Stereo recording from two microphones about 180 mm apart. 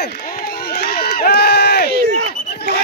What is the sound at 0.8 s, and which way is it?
Run, 55° left (ahead or behind).